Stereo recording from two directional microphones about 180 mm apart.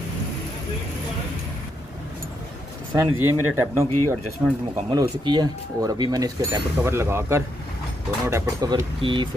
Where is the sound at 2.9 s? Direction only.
15° right (ahead or behind).